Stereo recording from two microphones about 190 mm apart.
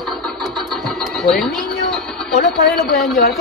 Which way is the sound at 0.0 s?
Centre (ahead or behind).